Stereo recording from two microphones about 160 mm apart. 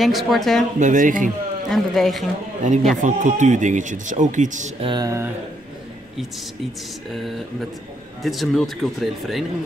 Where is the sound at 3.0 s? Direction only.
50° right (ahead or behind).